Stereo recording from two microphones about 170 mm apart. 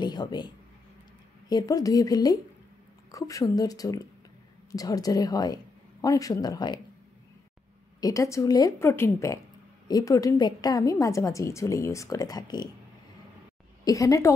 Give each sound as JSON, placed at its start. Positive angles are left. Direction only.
{"t": 0.0, "sound": "a sound", "side_deg": 25}
{"t": 1.5, "sound": "a woman's voice", "side_deg": 20}
{"t": 8.0, "sound": "a woman's voice", "side_deg": 20}
{"t": 13.8, "sound": "a woman's voice", "side_deg": 20}